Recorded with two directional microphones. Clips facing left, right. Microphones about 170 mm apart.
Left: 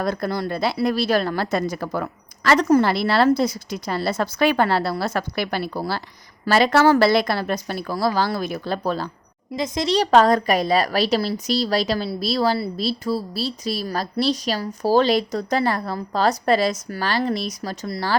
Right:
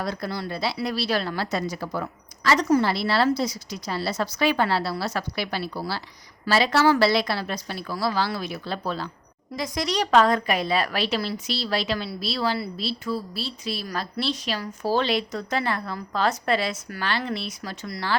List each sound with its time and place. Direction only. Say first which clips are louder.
0.0 s speech: left 6 dB; 50° left (ahead or behind)
9.6 s a woman's voice: left 5 dB; 25° left (ahead or behind)